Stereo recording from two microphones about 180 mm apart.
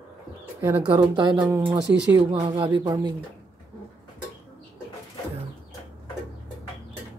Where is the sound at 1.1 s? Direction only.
25° right (ahead or behind).